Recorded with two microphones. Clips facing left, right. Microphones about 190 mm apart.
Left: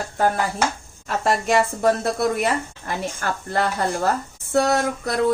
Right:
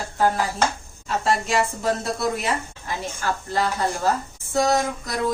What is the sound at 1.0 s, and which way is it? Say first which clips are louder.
A woman's voice: left 2 dB; 50° left (ahead or behind).